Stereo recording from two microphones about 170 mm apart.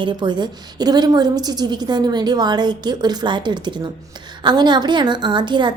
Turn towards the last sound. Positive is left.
turn(degrees=-25)  # may be behind; listen again after turning